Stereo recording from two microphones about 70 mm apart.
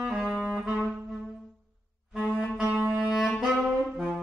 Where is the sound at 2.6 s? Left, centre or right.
Right.